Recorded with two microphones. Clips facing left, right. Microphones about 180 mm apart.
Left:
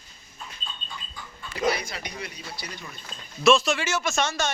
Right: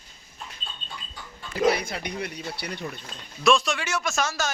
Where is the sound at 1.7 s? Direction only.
60° right (ahead or behind).